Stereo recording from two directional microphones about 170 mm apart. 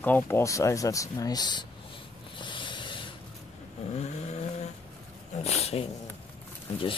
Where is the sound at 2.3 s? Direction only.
30° left (ahead or behind).